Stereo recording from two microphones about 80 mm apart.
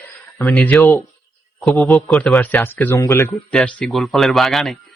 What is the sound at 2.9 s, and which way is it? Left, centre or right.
Speech, left.